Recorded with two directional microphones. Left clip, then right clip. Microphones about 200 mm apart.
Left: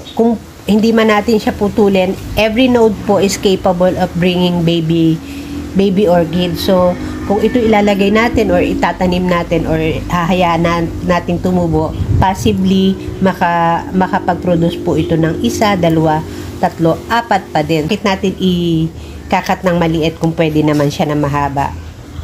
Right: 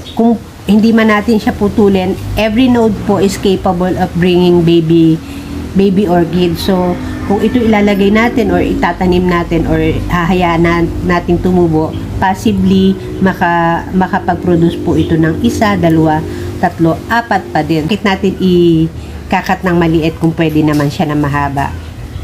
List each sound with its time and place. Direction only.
0.2 s a woman's voice: 30° left (ahead or behind)